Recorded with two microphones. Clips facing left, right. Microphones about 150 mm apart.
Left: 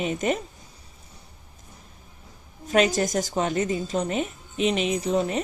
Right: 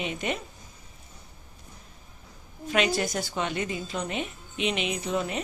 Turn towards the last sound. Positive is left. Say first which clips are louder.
# left 5 dB
turn(degrees=35)  # may be behind; listen again after turning